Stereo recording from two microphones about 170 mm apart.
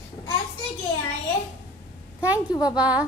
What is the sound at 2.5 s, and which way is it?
Speech, 25° left (ahead or behind).